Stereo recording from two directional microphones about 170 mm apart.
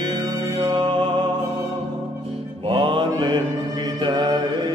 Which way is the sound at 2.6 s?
30° right (ahead or behind).